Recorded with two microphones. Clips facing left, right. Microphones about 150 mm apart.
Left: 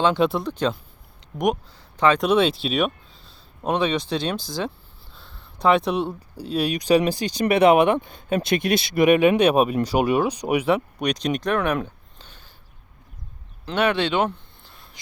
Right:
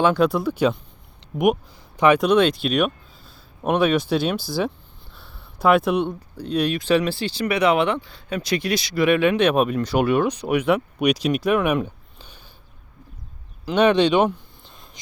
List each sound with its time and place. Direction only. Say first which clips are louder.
0.0 s speech: right 2 dB; centre (ahead or behind)
2.0 s speech: right 3 dB; 15° right (ahead or behind)
2.2 s speech: right 2 dB; centre (ahead or behind)
5.1 s a sound: right 1 dB; 5° right (ahead or behind)
6.1 s speech: right 2 dB; 10° left (ahead or behind)
8.4 s speech: left 1 dB; 55° left (ahead or behind)
8.6 s speech: left 2 dB; 25° left (ahead or behind)
10.7 s speech: right 2 dB; 5° right (ahead or behind)
13.7 s a sound: right 5 dB; 15° right (ahead or behind)